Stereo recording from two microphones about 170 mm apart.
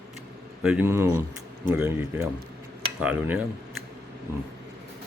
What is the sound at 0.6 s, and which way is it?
Speech, 5° right (ahead or behind).